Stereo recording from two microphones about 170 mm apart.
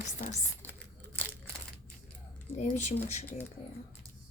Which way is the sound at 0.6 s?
10° left (ahead or behind).